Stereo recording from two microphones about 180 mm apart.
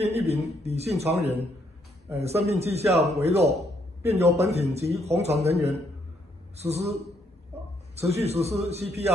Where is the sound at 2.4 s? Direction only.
35° right (ahead or behind).